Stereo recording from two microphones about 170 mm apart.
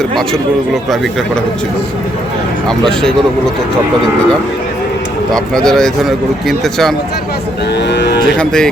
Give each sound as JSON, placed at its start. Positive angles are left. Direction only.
{"t": 2.6, "sound": "speech", "side_deg": 5}
{"t": 5.3, "sound": "speech", "side_deg": 5}
{"t": 7.8, "sound": "speech", "side_deg": 85}
{"t": 8.4, "sound": "speech", "side_deg": 5}